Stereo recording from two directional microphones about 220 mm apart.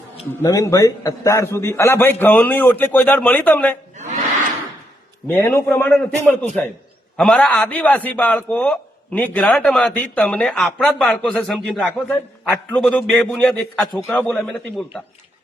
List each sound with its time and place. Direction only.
0.4 s a man's voice: 10° left (ahead or behind)
3.9 s a sound: 30° right (ahead or behind)
5.3 s a man's voice: 10° left (ahead or behind)